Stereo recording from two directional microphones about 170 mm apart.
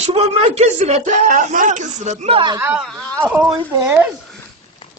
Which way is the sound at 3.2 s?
10° right (ahead or behind).